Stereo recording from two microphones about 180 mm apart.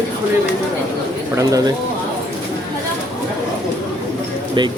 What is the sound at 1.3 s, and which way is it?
Speech, 20° right (ahead or behind).